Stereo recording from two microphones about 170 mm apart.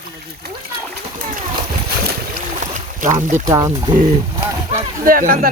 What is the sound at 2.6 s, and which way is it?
Boat, 50° right (ahead or behind).